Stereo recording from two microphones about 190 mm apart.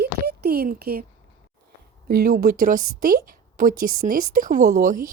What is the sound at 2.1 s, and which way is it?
A woman's voice, 45° right (ahead or behind).